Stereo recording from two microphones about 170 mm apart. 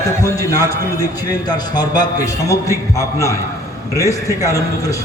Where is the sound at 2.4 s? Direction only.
20° left (ahead or behind).